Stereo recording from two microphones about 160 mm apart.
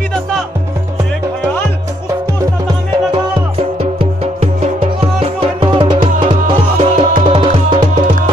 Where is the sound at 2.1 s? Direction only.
20° right (ahead or behind).